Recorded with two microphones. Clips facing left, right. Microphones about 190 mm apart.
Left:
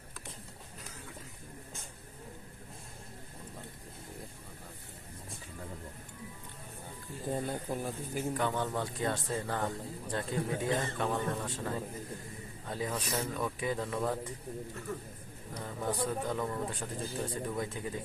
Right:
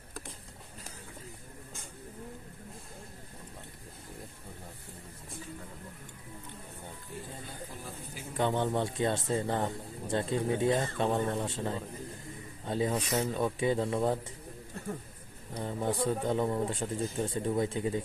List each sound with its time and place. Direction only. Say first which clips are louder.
7.3 s speech: left 9 dB; 45° left (ahead or behind)
8.4 s speech: right 8 dB; 25° right (ahead or behind)
15.5 s speech: right 3 dB; 25° right (ahead or behind)